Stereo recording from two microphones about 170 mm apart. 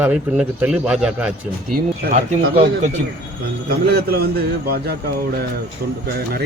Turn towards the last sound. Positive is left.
turn(degrees=-65)  # may be behind; listen again after turning